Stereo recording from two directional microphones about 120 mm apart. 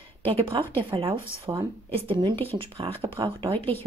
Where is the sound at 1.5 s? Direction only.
30° right (ahead or behind).